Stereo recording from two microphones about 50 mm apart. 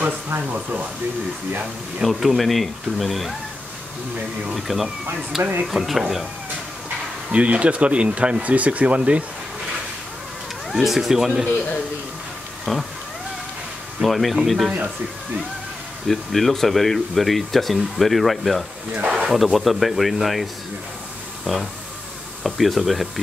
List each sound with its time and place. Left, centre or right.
2.0 s speech: centre
4.6 s speech: centre
7.2 s speech: right
10.7 s speech: centre
11.4 s a man's voice: left
14.0 s speech: centre
16.1 s speech: centre
21.5 s speech: centre